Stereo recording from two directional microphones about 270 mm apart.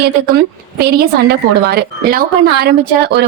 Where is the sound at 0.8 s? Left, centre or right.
Right.